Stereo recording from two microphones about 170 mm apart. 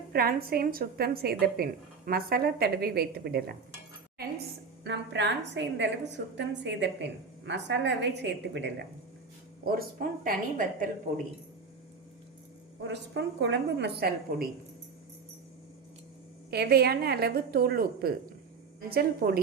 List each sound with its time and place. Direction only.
0.1 s a woman's voice: 60° right (ahead or behind)
4.8 s a woman's voice: 90° right
9.6 s a woman's voice: 60° right (ahead or behind)
12.8 s a woman's voice: 90° right; by 14.4 s 65° right (ahead or behind)
16.5 s a woman's voice: 70° right (ahead or behind)